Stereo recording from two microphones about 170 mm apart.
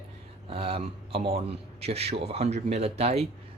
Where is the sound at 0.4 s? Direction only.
35° right (ahead or behind).